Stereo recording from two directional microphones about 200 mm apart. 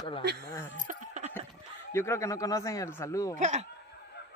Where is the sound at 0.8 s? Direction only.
35° right (ahead or behind).